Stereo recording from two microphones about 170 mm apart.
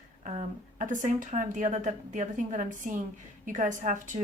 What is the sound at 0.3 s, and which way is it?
Speech, 45° right (ahead or behind).